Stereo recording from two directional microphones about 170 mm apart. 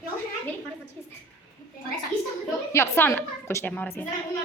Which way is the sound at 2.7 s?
15° left (ahead or behind).